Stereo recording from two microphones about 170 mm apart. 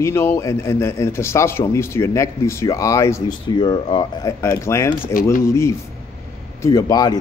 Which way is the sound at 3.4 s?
30° left (ahead or behind).